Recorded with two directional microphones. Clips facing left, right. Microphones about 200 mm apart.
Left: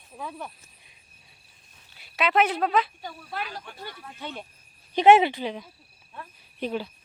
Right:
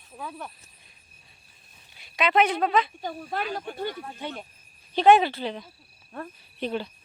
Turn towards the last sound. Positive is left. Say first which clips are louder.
# even
turn(degrees=5)  # may be behind; listen again after turning